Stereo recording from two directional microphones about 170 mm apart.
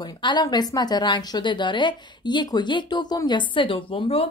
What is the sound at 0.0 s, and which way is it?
A woman's voice, 25° left (ahead or behind).